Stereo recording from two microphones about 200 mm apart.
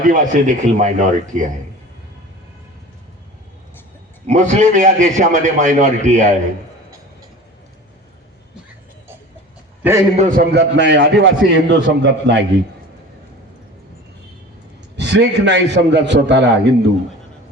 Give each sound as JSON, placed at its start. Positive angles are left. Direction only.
{"t": 0.0, "sound": "a man's voice", "side_deg": -40}
{"t": 4.3, "sound": "a man's voice", "side_deg": -35}
{"t": 9.8, "sound": "a man's voice", "side_deg": -10}
{"t": 10.2, "sound": "a man's voice", "side_deg": -40}
{"t": 10.5, "sound": "a man's voice", "side_deg": -60}
{"t": 14.9, "sound": "a man's voice", "side_deg": -60}